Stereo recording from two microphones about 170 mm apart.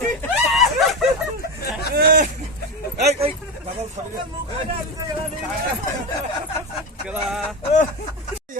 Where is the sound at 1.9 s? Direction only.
70° right (ahead or behind).